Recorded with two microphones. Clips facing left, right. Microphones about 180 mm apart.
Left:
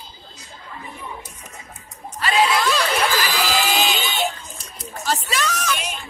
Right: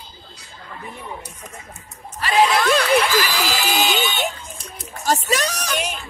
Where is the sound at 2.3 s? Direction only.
55° right (ahead or behind).